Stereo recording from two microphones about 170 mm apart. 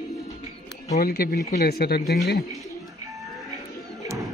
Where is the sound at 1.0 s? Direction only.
65° left (ahead or behind).